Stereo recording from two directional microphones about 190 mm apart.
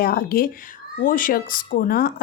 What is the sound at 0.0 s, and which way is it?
A woman's voice, 50° left (ahead or behind).